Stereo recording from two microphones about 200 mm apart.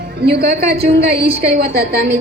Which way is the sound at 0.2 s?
55° right (ahead or behind).